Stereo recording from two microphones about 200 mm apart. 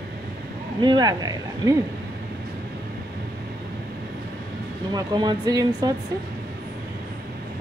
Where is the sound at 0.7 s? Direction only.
20° right (ahead or behind).